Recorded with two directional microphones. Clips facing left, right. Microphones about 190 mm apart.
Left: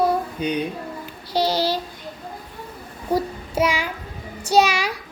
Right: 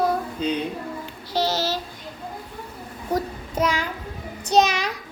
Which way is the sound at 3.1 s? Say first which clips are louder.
Left 3 dB; 10° left (ahead or behind).